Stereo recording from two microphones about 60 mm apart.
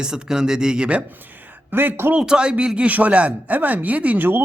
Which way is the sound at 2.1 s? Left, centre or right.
Centre.